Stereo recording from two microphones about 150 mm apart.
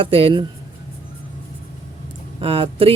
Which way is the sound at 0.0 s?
35° right (ahead or behind).